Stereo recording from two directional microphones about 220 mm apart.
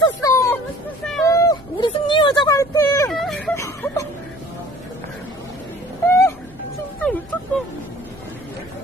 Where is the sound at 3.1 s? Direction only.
Centre (ahead or behind).